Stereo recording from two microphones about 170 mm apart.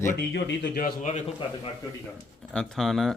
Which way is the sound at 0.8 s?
45° left (ahead or behind).